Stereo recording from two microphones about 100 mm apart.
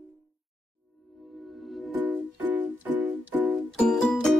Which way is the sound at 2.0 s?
20° right (ahead or behind).